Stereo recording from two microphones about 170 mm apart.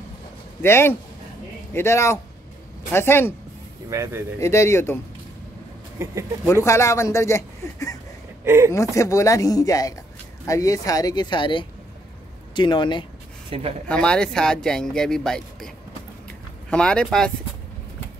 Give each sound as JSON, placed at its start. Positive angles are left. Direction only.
{"t": 0.6, "sound": "a man's voice", "side_deg": 15}
{"t": 3.9, "sound": "speech", "side_deg": -15}
{"t": 4.4, "sound": "a man's voice", "side_deg": 15}
{"t": 6.0, "sound": "speech", "side_deg": -15}
{"t": 6.4, "sound": "a man's voice", "side_deg": 15}
{"t": 8.5, "sound": "speech", "side_deg": -15}
{"t": 8.7, "sound": "speech", "side_deg": 20}
{"t": 13.5, "sound": "speech", "side_deg": -35}
{"t": 13.8, "sound": "speech", "side_deg": 5}
{"t": 16.3, "sound": "a sound", "side_deg": 5}